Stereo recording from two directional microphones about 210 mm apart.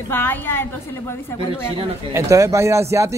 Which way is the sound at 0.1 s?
10° left (ahead or behind).